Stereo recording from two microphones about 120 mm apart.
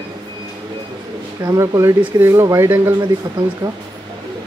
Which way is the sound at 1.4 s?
25° right (ahead or behind).